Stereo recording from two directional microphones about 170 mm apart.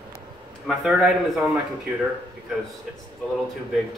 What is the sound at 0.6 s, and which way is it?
Speech, centre (ahead or behind).